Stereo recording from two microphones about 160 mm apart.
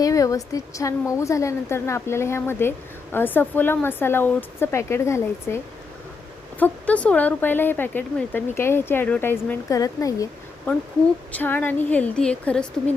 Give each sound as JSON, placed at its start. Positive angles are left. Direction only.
{"t": 0.0, "sound": "a woman's voice", "side_deg": 20}
{"t": 6.6, "sound": "a woman's voice", "side_deg": 10}
{"t": 11.3, "sound": "a woman's voice", "side_deg": 10}